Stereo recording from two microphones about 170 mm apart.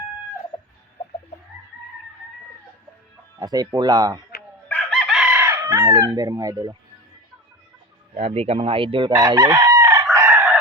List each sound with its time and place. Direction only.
3.3 s speech: 20° right (ahead or behind)
4.7 s chicken: 5° left (ahead or behind); by 6.7 s 20° right (ahead or behind)
8.1 s chicken: 35° right (ahead or behind); by 10.6 s 15° right (ahead or behind)